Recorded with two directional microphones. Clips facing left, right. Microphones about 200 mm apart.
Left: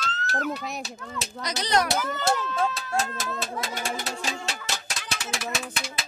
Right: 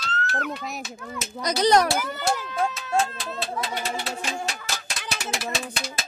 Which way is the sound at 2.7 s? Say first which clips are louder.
Right 4 dB; 35° left (ahead or behind).